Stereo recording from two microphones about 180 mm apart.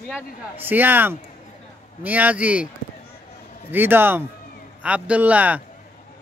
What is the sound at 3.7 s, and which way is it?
Speech, 10° right (ahead or behind).